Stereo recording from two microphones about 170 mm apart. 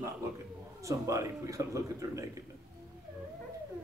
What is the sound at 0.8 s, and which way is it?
Speech, 20° right (ahead or behind).